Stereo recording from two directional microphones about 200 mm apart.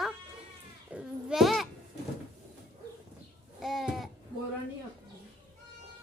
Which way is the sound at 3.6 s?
Centre (ahead or behind).